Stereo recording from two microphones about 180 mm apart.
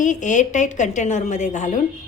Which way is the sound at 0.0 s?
45° left (ahead or behind).